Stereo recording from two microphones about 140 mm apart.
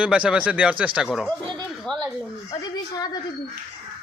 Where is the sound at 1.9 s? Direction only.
5° left (ahead or behind).